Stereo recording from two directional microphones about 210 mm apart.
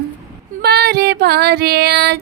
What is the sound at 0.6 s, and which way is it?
Female singing, 50° right (ahead or behind).